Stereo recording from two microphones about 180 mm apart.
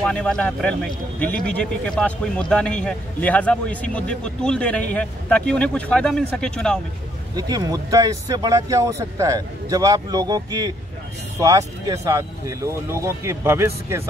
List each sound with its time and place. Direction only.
0.0 s a man's voice: 5° left (ahead or behind)
7.3 s speech: 20° right (ahead or behind)